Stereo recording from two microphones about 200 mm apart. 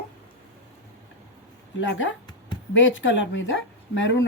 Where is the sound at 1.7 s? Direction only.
70° left (ahead or behind).